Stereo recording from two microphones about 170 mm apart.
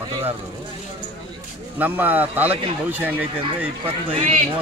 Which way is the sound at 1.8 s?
10° right (ahead or behind).